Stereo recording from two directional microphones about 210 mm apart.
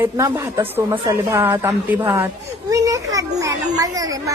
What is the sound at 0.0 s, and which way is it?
A child's voice, 15° right (ahead or behind).